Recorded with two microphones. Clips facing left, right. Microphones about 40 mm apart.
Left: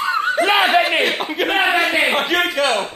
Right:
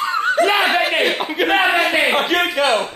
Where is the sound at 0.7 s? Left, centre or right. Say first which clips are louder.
Left 1 dB; centre.